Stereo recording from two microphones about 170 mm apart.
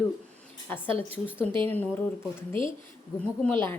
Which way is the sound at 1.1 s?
10° left (ahead or behind).